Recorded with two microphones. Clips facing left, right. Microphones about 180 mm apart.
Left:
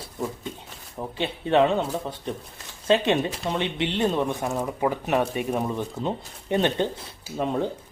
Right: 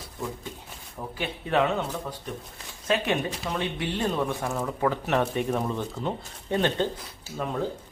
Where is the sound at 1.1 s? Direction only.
25° left (ahead or behind).